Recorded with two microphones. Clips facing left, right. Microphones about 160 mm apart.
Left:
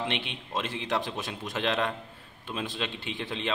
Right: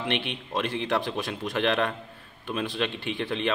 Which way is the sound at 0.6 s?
20° left (ahead or behind).